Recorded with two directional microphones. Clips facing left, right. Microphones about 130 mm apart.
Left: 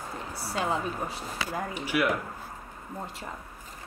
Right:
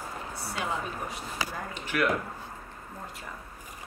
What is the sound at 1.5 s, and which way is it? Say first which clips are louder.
Speech: left 4 dB; 10° left (ahead or behind).